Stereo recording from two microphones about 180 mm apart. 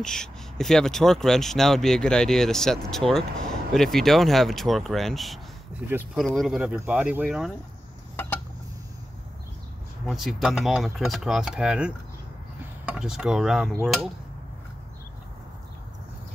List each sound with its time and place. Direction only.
0.0 s speech: 5° left (ahead or behind)
10.0 s speech: centre (ahead or behind)